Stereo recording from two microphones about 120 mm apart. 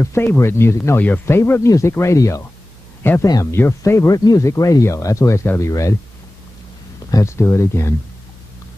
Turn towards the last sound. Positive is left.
turn(degrees=25)  # may be behind; listen again after turning